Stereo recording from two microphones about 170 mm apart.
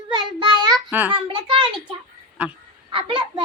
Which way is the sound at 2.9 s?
30° right (ahead or behind).